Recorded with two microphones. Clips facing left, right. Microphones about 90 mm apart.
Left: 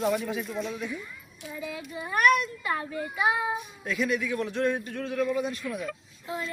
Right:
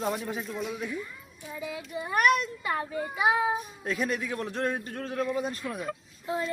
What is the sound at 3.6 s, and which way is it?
A man's voice, 40° right (ahead or behind).